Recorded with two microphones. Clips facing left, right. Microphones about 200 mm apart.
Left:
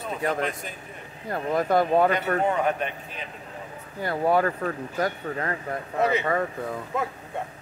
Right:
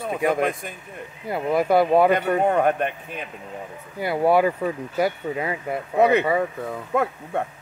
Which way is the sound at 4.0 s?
10° right (ahead or behind).